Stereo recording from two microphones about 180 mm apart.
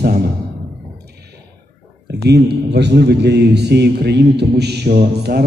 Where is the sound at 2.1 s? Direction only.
65° right (ahead or behind).